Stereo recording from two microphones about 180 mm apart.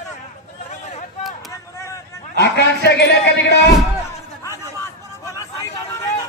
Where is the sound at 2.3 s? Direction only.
65° left (ahead or behind).